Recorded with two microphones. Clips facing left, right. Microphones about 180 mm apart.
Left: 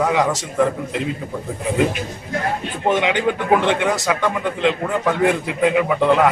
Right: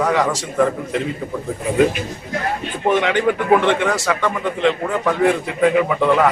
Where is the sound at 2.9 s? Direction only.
15° left (ahead or behind).